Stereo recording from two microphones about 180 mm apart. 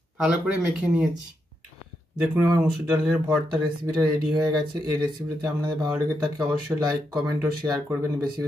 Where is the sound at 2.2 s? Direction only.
10° right (ahead or behind).